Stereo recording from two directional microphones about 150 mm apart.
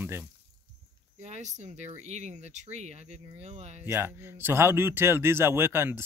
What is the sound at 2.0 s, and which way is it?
Speech, 50° right (ahead or behind).